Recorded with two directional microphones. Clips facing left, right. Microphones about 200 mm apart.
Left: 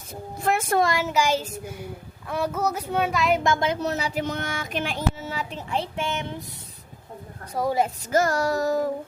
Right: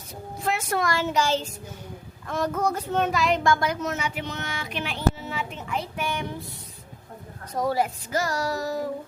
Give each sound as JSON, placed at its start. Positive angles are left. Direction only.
{"t": 0.4, "sound": "a sound", "side_deg": 50}
{"t": 1.0, "sound": "a child's voice", "side_deg": 10}
{"t": 3.4, "sound": "speech", "side_deg": 25}
{"t": 7.5, "sound": "a child's voice", "side_deg": 10}
{"t": 8.1, "sound": "child singing", "side_deg": 50}